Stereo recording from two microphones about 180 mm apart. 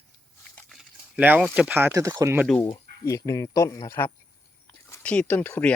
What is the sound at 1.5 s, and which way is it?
Speech, 10° right (ahead or behind).